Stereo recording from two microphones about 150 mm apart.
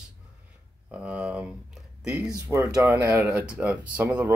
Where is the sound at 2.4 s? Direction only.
20° right (ahead or behind).